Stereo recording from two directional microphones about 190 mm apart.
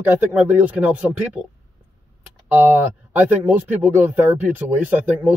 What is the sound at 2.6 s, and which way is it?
Speech, 10° right (ahead or behind).